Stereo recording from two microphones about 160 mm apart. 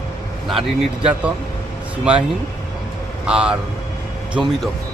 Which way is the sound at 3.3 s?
5° right (ahead or behind).